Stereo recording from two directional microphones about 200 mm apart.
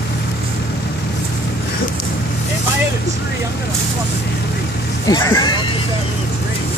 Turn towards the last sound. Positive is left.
turn(degrees=15)  # may be behind; listen again after turning